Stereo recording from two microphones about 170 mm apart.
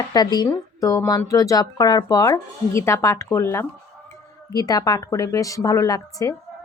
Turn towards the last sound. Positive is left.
turn(degrees=20)  # may be behind; listen again after turning